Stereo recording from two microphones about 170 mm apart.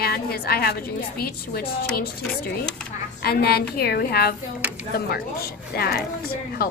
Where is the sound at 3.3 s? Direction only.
65° left (ahead or behind).